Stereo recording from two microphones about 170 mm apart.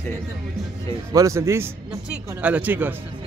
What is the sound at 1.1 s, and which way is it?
Speech, 20° right (ahead or behind).